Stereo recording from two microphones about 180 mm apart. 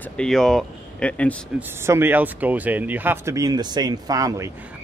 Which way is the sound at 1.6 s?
15° right (ahead or behind).